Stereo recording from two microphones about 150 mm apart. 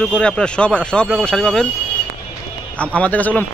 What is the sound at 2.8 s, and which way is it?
Speech, 10° left (ahead or behind).